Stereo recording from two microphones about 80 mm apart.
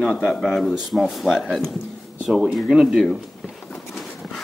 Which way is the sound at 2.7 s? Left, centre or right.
Centre.